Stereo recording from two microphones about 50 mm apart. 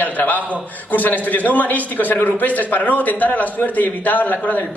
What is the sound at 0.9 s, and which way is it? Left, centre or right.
A man's voice, left.